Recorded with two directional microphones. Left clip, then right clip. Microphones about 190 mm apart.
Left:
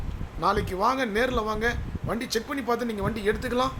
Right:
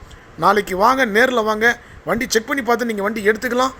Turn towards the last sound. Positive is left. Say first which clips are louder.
# right 9 dB
turn(degrees=-40)  # may be behind; listen again after turning